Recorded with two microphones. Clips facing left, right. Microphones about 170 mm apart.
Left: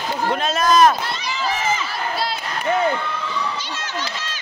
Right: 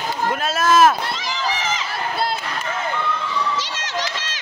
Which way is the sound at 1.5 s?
90° right.